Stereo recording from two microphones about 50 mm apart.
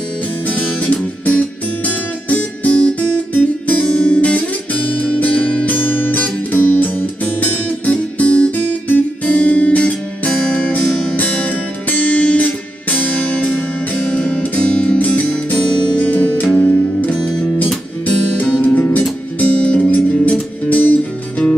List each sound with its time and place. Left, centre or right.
0.5 s music: left
3.8 s music: left
15.0 s music: left
17.3 s music: centre
18.0 s music: left